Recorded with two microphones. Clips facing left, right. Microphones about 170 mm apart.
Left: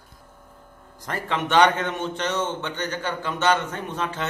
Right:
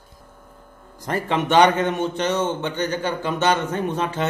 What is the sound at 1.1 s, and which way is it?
A man's voice, 15° right (ahead or behind).